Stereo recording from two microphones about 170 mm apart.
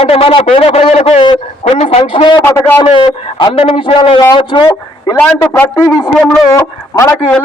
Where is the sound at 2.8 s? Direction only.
30° left (ahead or behind).